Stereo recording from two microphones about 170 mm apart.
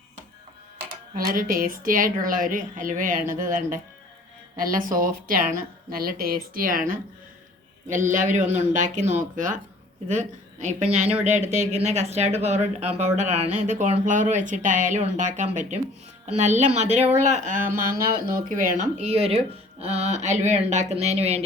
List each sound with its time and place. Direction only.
1.1 s a woman's voice: 55° right (ahead or behind); by 21.4 s 35° right (ahead or behind)